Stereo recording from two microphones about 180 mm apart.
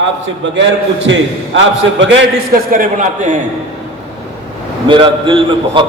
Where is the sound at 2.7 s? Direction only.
45° right (ahead or behind).